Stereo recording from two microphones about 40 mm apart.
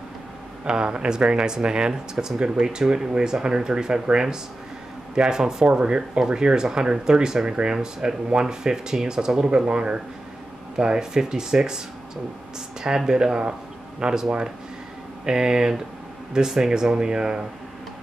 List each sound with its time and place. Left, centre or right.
0.7 s speech: right
12.8 s speech: centre